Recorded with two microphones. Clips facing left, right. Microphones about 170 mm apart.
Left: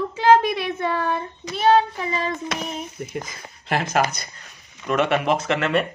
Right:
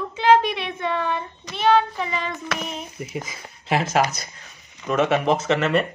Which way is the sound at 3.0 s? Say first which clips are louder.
Left 1 dB; 5° right (ahead or behind).